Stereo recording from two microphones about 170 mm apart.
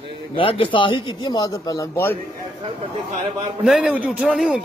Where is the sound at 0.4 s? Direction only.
30° left (ahead or behind); by 2.1 s 15° left (ahead or behind).